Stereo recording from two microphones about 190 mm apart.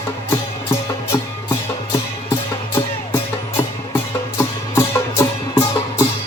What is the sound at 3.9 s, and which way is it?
Music, 15° left (ahead or behind).